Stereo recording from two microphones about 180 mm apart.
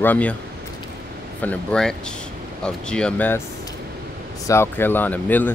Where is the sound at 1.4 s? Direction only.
5° left (ahead or behind).